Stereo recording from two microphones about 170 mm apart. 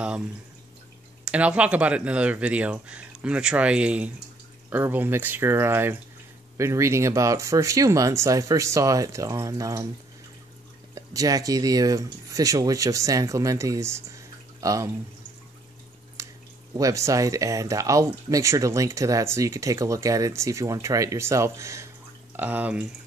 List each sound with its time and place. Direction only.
1.2 s speech: 5° right (ahead or behind)
11.0 s speech: 20° right (ahead or behind)
16.2 s drip: 20° right (ahead or behind)
16.7 s speech: 20° right (ahead or behind)